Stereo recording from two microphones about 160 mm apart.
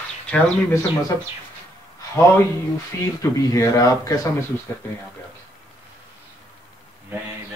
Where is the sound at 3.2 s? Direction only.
20° left (ahead or behind).